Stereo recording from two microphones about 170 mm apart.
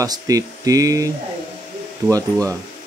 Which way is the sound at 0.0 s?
20° right (ahead or behind).